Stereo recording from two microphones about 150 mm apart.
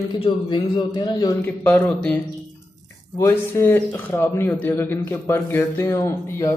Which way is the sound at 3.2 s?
20° left (ahead or behind).